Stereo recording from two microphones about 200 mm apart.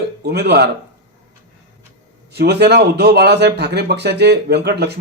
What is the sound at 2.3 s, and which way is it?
A man's voice, 55° right (ahead or behind).